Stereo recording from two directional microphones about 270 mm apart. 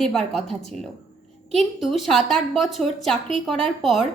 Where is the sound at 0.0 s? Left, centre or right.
Centre.